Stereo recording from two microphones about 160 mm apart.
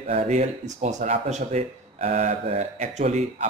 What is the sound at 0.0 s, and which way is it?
Speech, 40° right (ahead or behind).